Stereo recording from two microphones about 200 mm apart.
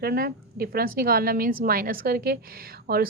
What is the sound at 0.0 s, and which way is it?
A woman's voice, 50° right (ahead or behind).